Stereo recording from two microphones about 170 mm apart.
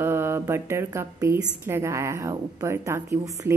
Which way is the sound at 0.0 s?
15° right (ahead or behind).